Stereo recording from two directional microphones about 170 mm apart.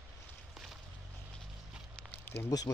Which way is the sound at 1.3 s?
Centre (ahead or behind).